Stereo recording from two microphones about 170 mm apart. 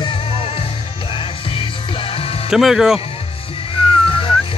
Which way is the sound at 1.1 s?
30° left (ahead or behind).